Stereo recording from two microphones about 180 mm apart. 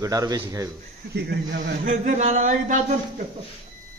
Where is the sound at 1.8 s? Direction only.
40° right (ahead or behind).